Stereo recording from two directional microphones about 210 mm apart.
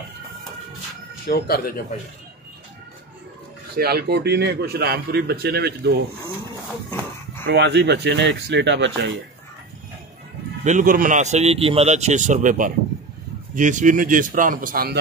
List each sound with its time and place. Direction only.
1.2 s speech: 45° left (ahead or behind)
3.7 s a man's voice: 50° right (ahead or behind)
7.4 s speech: 55° right (ahead or behind)
10.6 s a man's voice: 35° right (ahead or behind)